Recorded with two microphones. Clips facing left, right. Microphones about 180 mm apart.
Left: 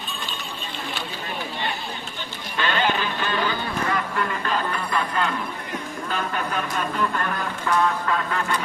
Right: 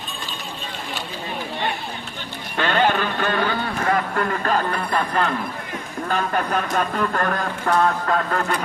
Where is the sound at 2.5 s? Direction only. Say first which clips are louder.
Right 4 dB; 55° right (ahead or behind).